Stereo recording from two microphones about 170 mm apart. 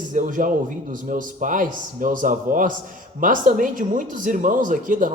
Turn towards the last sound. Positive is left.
turn(degrees=-50)  # may be behind; listen again after turning